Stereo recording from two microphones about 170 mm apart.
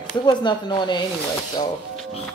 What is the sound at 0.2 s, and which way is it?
Speech, 25° left (ahead or behind).